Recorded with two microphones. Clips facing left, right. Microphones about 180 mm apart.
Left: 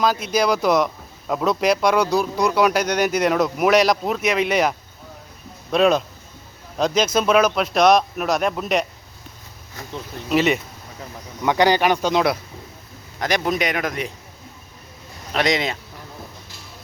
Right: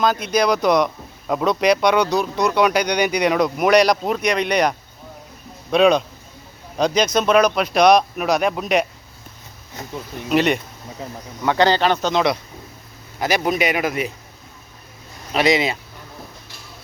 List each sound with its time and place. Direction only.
0.0 s speech: 5° left (ahead or behind)
5.7 s speech: centre (ahead or behind)
10.2 s speech: centre (ahead or behind)
11.4 s a man's voice: 15° left (ahead or behind)
13.1 s speech: 5° right (ahead or behind)
15.3 s speech: 5° right (ahead or behind)